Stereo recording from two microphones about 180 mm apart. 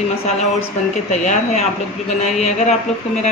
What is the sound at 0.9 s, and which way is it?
A woman's voice, 40° left (ahead or behind).